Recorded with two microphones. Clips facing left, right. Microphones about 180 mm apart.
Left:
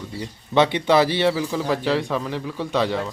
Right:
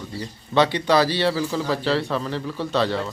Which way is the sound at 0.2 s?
20° left (ahead or behind).